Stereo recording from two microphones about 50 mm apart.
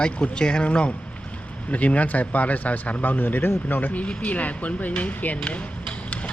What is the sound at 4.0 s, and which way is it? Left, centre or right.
Speech, left.